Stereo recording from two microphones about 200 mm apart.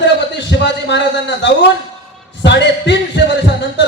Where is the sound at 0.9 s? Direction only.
60° left (ahead or behind).